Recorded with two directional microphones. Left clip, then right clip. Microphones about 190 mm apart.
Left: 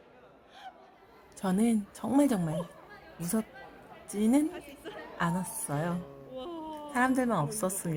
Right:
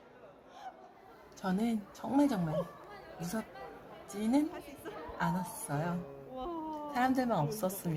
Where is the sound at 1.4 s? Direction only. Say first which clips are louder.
Left 5 dB; 30° left (ahead or behind).